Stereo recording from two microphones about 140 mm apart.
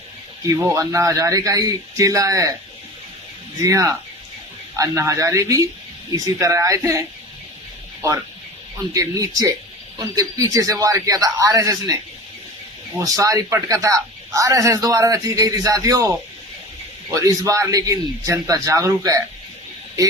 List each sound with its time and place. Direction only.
0.4 s a man's voice: 25° right (ahead or behind)
3.6 s a man's voice: 25° right (ahead or behind)
8.9 s a man's voice: 25° right (ahead or behind)
13.0 s a man's voice: 25° right (ahead or behind)
17.2 s a man's voice: 25° right (ahead or behind)